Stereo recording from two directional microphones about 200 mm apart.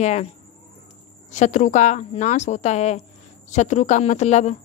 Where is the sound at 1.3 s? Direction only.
35° left (ahead or behind).